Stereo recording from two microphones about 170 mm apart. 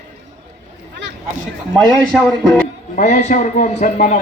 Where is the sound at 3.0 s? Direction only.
45° left (ahead or behind).